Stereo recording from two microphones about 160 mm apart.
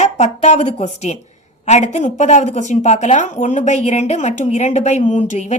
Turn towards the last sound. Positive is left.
turn(degrees=45)  # may be behind; listen again after turning